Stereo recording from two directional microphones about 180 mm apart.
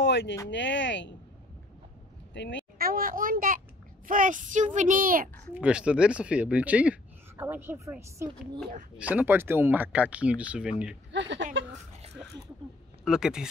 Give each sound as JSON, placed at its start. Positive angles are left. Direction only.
{"t": 0.0, "sound": "a sound", "side_deg": 80}
{"t": 0.5, "sound": "speech", "side_deg": 80}
{"t": 2.3, "sound": "speech", "side_deg": 80}
{"t": 2.8, "sound": "a child's voice", "side_deg": -55}
{"t": 5.5, "sound": "speech", "side_deg": -5}
{"t": 11.1, "sound": "speech", "side_deg": -90}
{"t": 13.0, "sound": "speech", "side_deg": -5}